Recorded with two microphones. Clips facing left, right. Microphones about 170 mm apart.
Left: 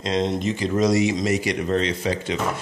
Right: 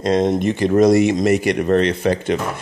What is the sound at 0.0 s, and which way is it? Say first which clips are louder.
Speech: right 6 dB; 50° right (ahead or behind).